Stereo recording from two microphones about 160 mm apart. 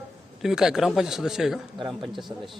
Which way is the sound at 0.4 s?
5° right (ahead or behind).